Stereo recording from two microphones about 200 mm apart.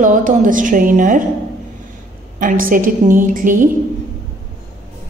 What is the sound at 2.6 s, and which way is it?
A woman's voice, 45° right (ahead or behind).